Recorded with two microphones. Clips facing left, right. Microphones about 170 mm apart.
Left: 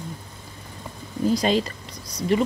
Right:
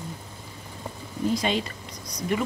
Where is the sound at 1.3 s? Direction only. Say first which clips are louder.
Left 5 dB; 35° left (ahead or behind).